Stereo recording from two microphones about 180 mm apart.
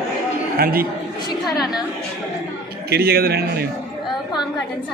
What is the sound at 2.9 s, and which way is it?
Speech, 60° right (ahead or behind).